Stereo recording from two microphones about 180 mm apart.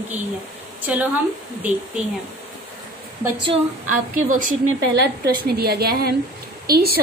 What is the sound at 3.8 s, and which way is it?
Speech, 45° right (ahead or behind).